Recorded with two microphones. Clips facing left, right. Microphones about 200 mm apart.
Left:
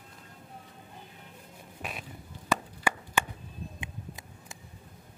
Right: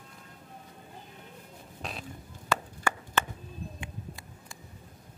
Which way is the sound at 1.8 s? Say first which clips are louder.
Right 1 dB; 10° left (ahead or behind).